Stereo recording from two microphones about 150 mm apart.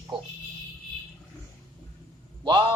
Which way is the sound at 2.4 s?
30° right (ahead or behind).